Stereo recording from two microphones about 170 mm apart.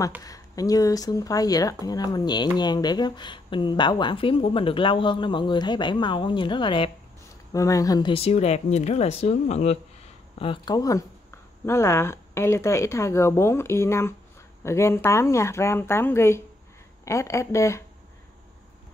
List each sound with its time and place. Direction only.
0.2 s speech: 20° left (ahead or behind)
7.5 s speech: 20° left (ahead or behind)
8.1 s speech: 35° left (ahead or behind)
10.4 s speech: 25° left (ahead or behind)